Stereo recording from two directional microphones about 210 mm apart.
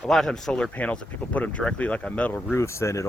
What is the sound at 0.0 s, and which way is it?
Speech, centre (ahead or behind).